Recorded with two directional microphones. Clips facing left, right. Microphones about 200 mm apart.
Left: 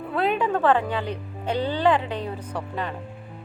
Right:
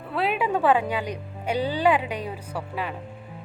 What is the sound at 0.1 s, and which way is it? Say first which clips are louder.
Speech: left 1 dB; 5° right (ahead or behind).